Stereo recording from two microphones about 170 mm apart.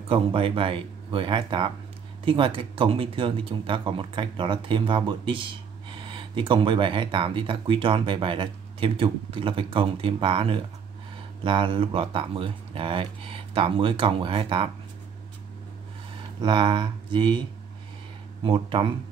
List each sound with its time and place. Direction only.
0.1 s speech: 30° right (ahead or behind)
16.3 s speech: 30° right (ahead or behind)